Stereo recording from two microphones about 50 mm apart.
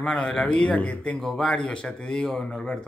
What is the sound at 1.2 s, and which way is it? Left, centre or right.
Speech, centre.